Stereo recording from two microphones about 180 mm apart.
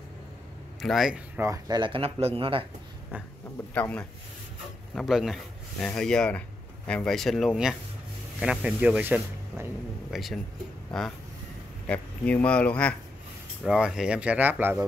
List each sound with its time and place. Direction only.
0.7 s speech: centre (ahead or behind); by 2.6 s 30° right (ahead or behind)
3.7 s a man's voice: 5° left (ahead or behind)
13.7 s speech: 5° right (ahead or behind)